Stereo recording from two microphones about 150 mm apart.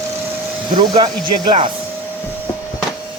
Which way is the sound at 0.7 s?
35° right (ahead or behind).